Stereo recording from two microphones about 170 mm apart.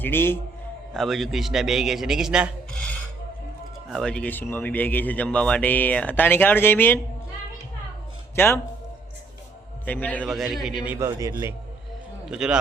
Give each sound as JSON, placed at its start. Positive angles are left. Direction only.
{"t": 0.0, "sound": "speech", "side_deg": 15}
{"t": 0.9, "sound": "a man's voice", "side_deg": 0}
{"t": 3.8, "sound": "speech", "side_deg": 5}
{"t": 8.4, "sound": "speech", "side_deg": 10}
{"t": 9.8, "sound": "a man's voice", "side_deg": 10}
{"t": 10.9, "sound": "a man's voice", "side_deg": -15}
{"t": 12.3, "sound": "a man's voice", "side_deg": -5}